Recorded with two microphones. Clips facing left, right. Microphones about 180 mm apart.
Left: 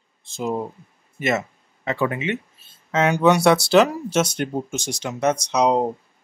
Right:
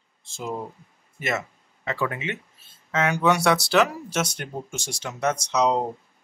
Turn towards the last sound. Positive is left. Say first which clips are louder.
# left 3 dB
turn(degrees=15)  # may be behind; listen again after turning